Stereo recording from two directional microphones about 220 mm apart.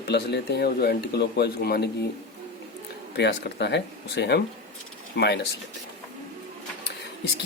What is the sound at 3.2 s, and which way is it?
Speech, 50° left (ahead or behind).